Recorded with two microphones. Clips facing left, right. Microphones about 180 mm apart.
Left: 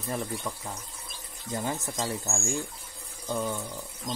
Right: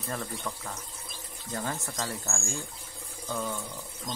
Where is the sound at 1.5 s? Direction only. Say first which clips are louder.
Left 3 dB; 20° left (ahead or behind).